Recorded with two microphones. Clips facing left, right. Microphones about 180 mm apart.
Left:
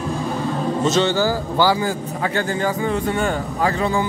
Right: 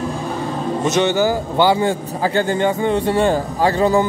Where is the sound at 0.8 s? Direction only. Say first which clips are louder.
Right 2 dB; 20° right (ahead or behind); by 4.0 s 35° right (ahead or behind).